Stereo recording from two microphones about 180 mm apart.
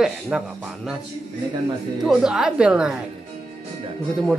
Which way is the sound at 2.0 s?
5° right (ahead or behind).